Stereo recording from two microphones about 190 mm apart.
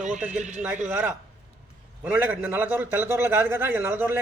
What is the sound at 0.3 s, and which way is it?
Speech, 40° right (ahead or behind).